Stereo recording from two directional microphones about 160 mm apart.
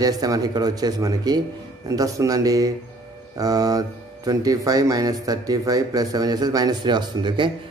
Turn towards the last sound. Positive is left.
turn(degrees=-30)  # may be behind; listen again after turning